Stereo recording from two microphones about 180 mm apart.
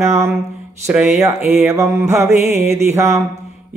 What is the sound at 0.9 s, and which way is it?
Speech, 5° right (ahead or behind).